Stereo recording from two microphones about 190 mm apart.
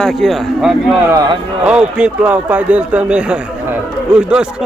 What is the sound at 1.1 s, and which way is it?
Speech, 20° right (ahead or behind).